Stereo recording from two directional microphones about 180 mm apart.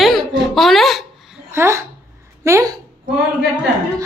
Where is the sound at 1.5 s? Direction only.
15° right (ahead or behind).